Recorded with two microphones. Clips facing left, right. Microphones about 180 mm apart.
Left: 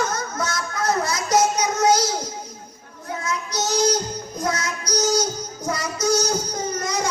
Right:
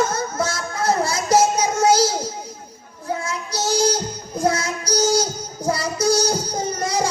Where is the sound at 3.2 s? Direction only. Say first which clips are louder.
Left 3 dB; 30° right (ahead or behind).